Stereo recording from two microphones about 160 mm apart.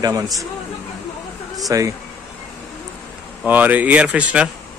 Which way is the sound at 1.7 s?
20° right (ahead or behind).